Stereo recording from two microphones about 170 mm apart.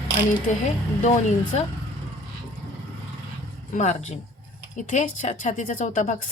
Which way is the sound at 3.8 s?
45° left (ahead or behind).